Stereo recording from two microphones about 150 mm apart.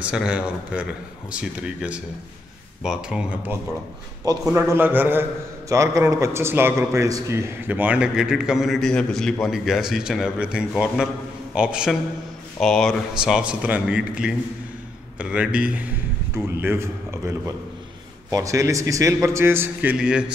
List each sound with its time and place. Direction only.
0.0 s a man's voice: 5° right (ahead or behind)
4.2 s a man's voice: 20° right (ahead or behind); by 20.2 s 5° right (ahead or behind)